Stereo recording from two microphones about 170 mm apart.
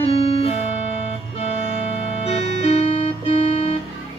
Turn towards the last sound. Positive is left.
turn(degrees=35)  # may be behind; listen again after turning